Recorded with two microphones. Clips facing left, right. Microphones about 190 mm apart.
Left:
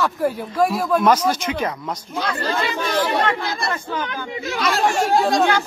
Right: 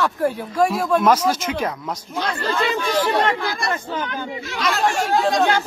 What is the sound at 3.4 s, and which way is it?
Speech, 25° left (ahead or behind).